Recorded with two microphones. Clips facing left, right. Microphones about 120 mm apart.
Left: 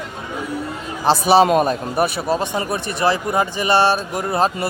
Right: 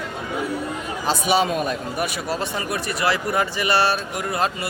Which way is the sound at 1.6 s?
35° left (ahead or behind).